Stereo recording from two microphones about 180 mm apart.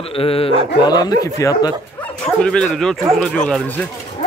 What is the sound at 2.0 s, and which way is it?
Speech, 5° left (ahead or behind).